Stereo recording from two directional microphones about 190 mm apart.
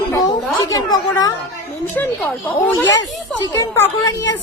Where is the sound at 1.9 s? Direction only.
10° left (ahead or behind).